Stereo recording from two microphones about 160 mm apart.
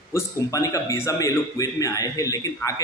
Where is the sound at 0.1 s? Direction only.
20° left (ahead or behind).